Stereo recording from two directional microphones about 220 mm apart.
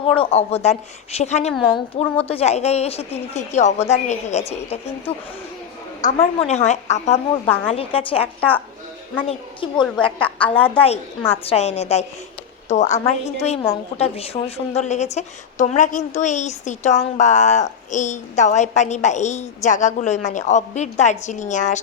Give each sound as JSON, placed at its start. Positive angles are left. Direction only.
{"t": 0.0, "sound": "a woman's voice", "side_deg": 25}
{"t": 7.4, "sound": "a woman's voice", "side_deg": 10}
{"t": 7.7, "sound": "a woman's voice", "side_deg": 25}